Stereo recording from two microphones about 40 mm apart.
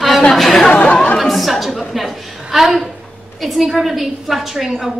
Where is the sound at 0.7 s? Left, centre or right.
Left.